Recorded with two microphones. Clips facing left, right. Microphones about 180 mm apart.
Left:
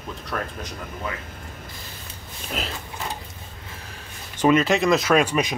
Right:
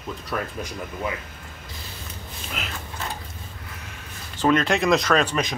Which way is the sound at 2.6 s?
35° left (ahead or behind).